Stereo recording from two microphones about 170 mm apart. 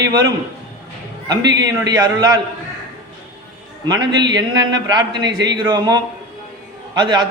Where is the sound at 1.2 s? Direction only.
25° right (ahead or behind).